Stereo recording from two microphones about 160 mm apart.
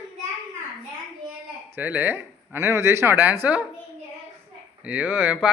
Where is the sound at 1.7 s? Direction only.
10° right (ahead or behind).